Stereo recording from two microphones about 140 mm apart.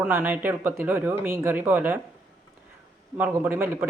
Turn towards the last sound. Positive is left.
turn(degrees=-15)  # may be behind; listen again after turning